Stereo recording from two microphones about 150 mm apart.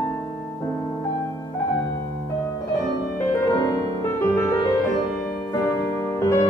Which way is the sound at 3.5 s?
25° left (ahead or behind).